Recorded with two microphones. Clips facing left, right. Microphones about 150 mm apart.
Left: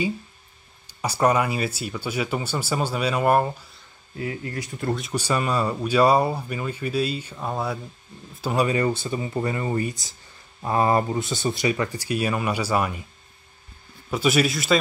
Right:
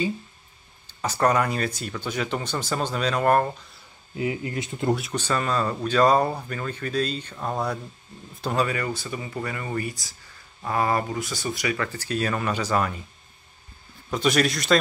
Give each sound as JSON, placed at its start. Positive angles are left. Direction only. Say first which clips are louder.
{"t": 0.8, "sound": "speech", "louder": "left 1 dB", "side_deg": 10}
{"t": 4.2, "sound": "speech", "louder": "right 3 dB", "side_deg": -20}
{"t": 5.1, "sound": "speech", "louder": "left 1 dB", "side_deg": 10}
{"t": 8.6, "sound": "speech", "louder": "left 6 dB", "side_deg": 25}
{"t": 14.1, "sound": "speech", "louder": "left 1 dB", "side_deg": 5}